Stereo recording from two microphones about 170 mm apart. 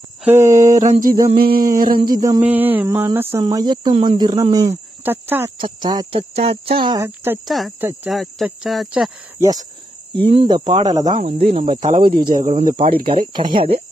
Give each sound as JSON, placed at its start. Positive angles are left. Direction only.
{"t": 0.4, "sound": "a sound", "side_deg": -50}
{"t": 1.2, "sound": "a sound", "side_deg": -65}
{"t": 2.1, "sound": "speech", "side_deg": -25}
{"t": 2.4, "sound": "speech", "side_deg": -10}
{"t": 5.6, "sound": "speech", "side_deg": -25}
{"t": 7.4, "sound": "speech", "side_deg": 0}
{"t": 9.4, "sound": "speech", "side_deg": -20}
{"t": 10.2, "sound": "speech", "side_deg": -35}
{"t": 12.4, "sound": "speech", "side_deg": -40}
{"t": 13.0, "sound": "speech", "side_deg": -30}